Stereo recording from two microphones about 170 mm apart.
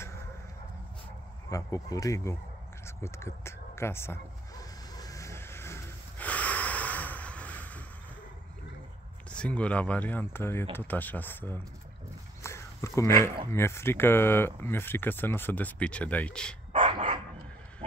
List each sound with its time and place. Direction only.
1.5 s speech: 20° left (ahead or behind)
3.0 s a sound: 15° left (ahead or behind)
9.3 s speech: 5° left (ahead or behind)
12.4 s a sound: 15° left (ahead or behind)
13.5 s speech: 15° left (ahead or behind)
16.7 s dog: 30° right (ahead or behind)